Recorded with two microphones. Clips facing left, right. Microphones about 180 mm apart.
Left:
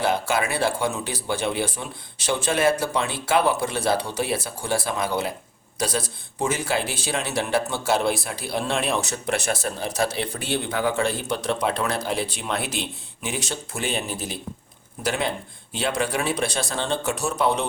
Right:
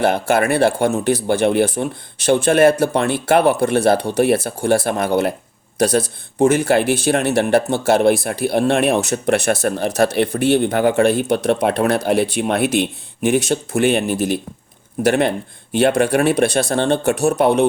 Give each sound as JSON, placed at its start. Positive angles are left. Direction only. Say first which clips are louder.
{"t": 0.0, "sound": "speech", "louder": "right 7 dB", "side_deg": -65}
{"t": 6.5, "sound": "speech", "louder": "right 10 dB", "side_deg": -65}